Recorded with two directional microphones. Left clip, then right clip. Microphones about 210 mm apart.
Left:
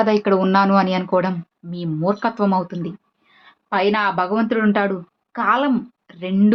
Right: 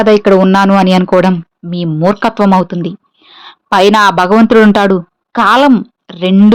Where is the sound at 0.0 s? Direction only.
35° right (ahead or behind).